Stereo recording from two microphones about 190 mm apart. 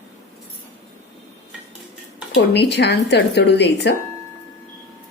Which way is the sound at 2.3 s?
60° left (ahead or behind).